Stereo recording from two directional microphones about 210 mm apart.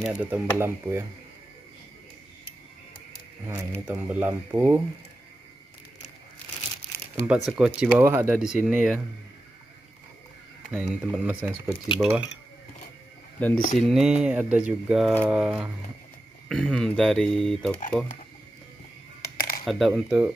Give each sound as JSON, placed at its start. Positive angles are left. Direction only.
{"t": 0.0, "sound": "speech", "side_deg": -5}
{"t": 3.4, "sound": "speech", "side_deg": -10}
{"t": 7.2, "sound": "speech", "side_deg": 0}
{"t": 10.7, "sound": "speech", "side_deg": -5}
{"t": 13.4, "sound": "speech", "side_deg": 5}
{"t": 19.3, "sound": "a sound", "side_deg": 45}
{"t": 19.6, "sound": "speech", "side_deg": 0}